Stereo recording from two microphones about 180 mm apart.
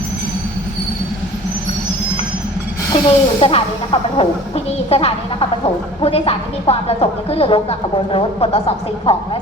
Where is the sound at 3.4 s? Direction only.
35° left (ahead or behind).